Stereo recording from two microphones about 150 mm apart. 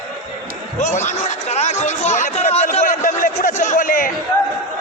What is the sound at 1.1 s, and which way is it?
Chatter, 50° left (ahead or behind).